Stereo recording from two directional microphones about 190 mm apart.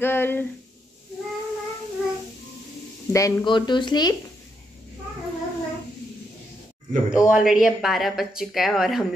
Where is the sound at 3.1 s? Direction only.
20° left (ahead or behind).